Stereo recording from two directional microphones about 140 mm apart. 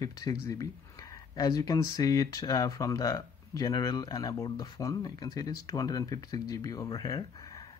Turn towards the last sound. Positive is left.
turn(degrees=25)  # may be behind; listen again after turning